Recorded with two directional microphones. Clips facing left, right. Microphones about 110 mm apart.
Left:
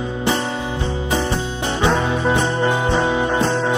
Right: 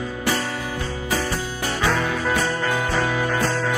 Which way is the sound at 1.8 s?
25° left (ahead or behind).